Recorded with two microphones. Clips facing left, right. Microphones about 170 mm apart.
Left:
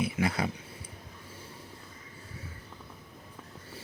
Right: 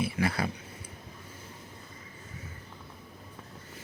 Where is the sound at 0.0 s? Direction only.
20° left (ahead or behind).